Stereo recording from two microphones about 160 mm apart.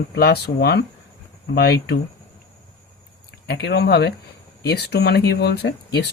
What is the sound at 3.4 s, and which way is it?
Speech, 90° left.